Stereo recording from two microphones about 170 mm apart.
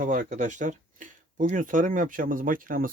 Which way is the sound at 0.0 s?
50° right (ahead or behind).